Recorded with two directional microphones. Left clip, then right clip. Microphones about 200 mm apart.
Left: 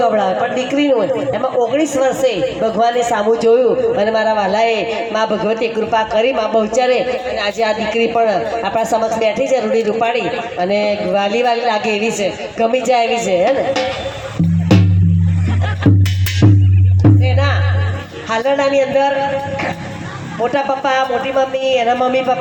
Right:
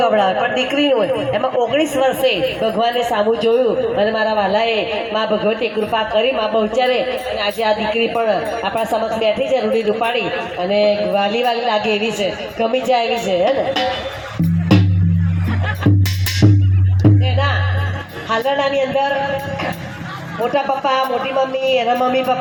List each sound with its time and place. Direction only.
0.0 s a woman's voice: 50° left (ahead or behind)
14.7 s music: 50° left (ahead or behind)
18.3 s a man's voice: 50° left (ahead or behind)
20.4 s a woman's voice: 45° left (ahead or behind)